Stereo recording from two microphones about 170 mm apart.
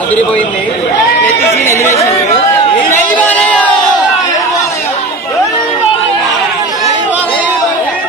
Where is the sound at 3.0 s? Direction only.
10° left (ahead or behind).